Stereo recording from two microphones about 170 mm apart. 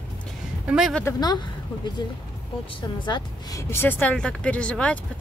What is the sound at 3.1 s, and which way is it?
Speech, 20° left (ahead or behind).